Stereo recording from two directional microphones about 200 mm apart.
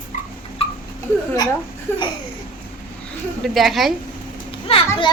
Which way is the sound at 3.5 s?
Centre (ahead or behind).